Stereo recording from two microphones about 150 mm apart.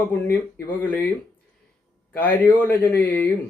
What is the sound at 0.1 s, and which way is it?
Speech, 10° left (ahead or behind).